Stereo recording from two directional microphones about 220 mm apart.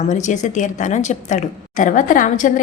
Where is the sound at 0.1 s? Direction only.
35° left (ahead or behind).